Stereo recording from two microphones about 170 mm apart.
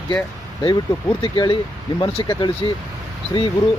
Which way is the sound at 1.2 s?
30° left (ahead or behind).